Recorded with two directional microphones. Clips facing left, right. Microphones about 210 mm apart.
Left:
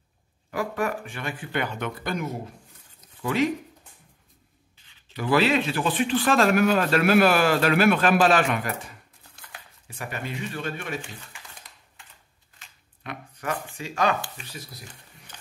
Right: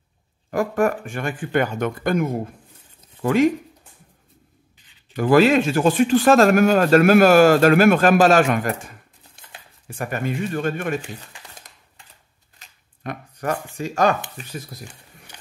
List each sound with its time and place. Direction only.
0.5 s speech: 45° right (ahead or behind)
5.1 s speech: 45° right (ahead or behind)
12.5 s a sound: 45° right (ahead or behind)
14.3 s speech: 50° right (ahead or behind)